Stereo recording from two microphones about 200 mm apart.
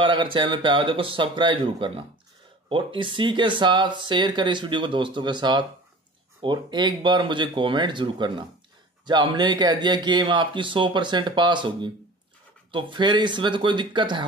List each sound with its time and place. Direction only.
0.0 s speech: 25° right (ahead or behind)